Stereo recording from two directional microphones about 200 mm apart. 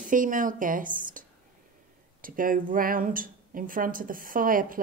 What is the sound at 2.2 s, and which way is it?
Speech, 45° right (ahead or behind).